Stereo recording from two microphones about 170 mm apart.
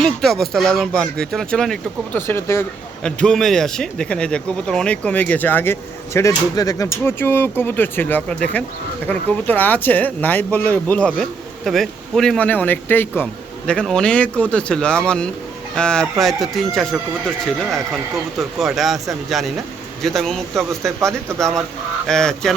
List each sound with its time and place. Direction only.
0.0 s speech: centre (ahead or behind)
2.2 s speech: 15° left (ahead or behind)